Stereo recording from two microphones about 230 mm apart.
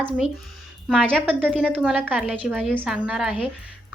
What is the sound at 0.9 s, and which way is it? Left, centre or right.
A woman's voice, centre.